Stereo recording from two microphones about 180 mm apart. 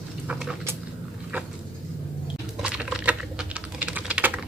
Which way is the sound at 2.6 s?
5° right (ahead or behind).